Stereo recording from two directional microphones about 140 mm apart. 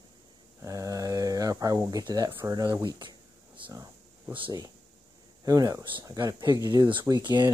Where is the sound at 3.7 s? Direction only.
20° right (ahead or behind).